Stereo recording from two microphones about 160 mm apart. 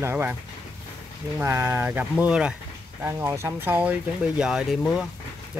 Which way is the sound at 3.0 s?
15° right (ahead or behind).